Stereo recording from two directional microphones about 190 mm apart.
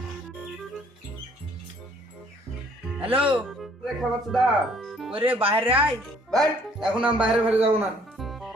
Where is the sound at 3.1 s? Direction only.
30° right (ahead or behind).